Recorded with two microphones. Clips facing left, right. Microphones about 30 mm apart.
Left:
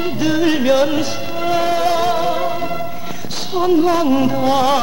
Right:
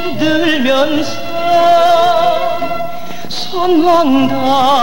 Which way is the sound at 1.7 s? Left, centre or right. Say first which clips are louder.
Right 8 dB; right.